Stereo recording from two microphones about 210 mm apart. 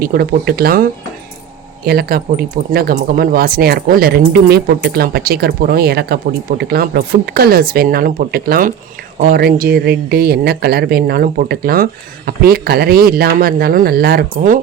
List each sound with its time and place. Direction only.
0.0 s speech: 45° right (ahead or behind)
1.9 s speech: 45° right (ahead or behind)